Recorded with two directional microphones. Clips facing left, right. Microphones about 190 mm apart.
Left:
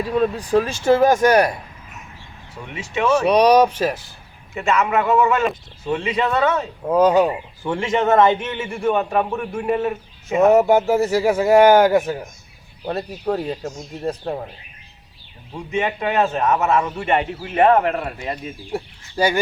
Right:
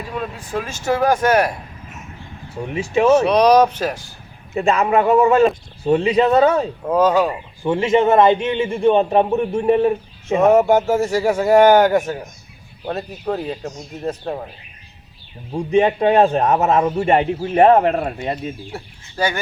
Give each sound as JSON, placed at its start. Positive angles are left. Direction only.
{"t": 0.2, "sound": "speech", "side_deg": 40}
{"t": 2.6, "sound": "a man's voice", "side_deg": -35}
{"t": 3.2, "sound": "speech", "side_deg": 10}
{"t": 4.5, "sound": "a man's voice", "side_deg": -35}
{"t": 7.0, "sound": "speech", "side_deg": 15}
{"t": 7.6, "sound": "a man's voice", "side_deg": -15}
{"t": 10.3, "sound": "speech", "side_deg": 5}
{"t": 15.5, "sound": "a man's voice", "side_deg": -35}
{"t": 18.7, "sound": "speech", "side_deg": 15}